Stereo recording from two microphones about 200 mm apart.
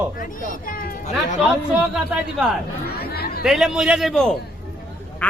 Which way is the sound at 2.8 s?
50° left (ahead or behind).